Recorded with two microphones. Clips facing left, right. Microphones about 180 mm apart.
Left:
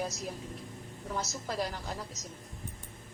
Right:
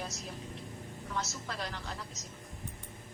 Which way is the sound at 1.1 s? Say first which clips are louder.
Left 4 dB; 35° left (ahead or behind).